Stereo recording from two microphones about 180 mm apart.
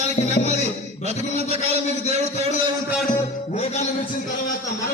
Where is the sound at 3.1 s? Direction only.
40° left (ahead or behind).